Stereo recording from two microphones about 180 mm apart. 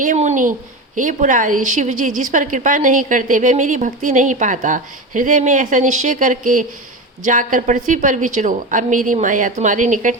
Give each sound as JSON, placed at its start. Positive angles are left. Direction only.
{"t": 0.0, "sound": "a woman's voice", "side_deg": -40}